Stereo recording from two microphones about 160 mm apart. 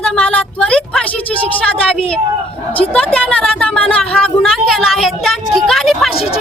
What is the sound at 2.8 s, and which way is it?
A woman's voice, centre (ahead or behind).